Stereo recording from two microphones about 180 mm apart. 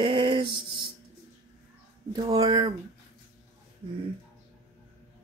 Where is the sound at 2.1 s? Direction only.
30° right (ahead or behind).